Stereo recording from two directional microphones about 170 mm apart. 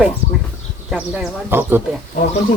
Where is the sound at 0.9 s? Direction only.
5° right (ahead or behind).